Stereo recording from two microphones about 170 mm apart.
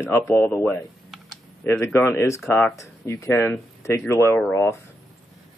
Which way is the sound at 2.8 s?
20° left (ahead or behind).